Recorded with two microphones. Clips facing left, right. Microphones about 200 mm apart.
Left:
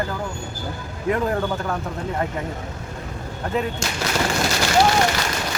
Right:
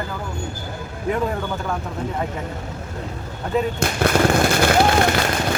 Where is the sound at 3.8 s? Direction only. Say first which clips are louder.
Right 6 dB; 55° right (ahead or behind).